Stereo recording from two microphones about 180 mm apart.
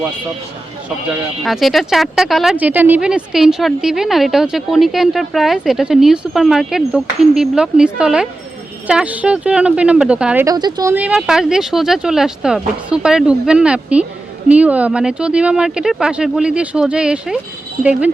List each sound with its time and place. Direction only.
1.5 s speech: centre (ahead or behind)
10.4 s speech: 20° right (ahead or behind)
10.9 s speech: 5° right (ahead or behind)